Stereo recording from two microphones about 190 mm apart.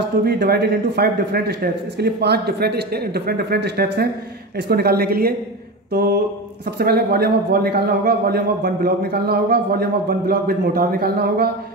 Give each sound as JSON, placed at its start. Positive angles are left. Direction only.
{"t": 0.2, "sound": "a man's voice", "side_deg": -55}
{"t": 5.9, "sound": "mantra", "side_deg": -55}
{"t": 6.8, "sound": "a man's voice", "side_deg": -55}